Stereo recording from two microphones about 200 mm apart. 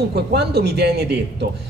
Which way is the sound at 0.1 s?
55° right (ahead or behind).